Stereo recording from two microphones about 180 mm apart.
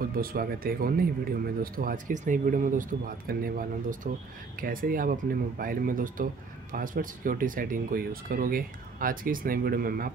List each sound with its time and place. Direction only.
0.0 s speech: 55° right (ahead or behind)